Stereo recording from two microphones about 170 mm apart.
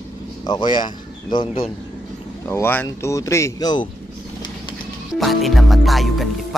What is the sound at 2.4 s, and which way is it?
Speech, 15° left (ahead or behind).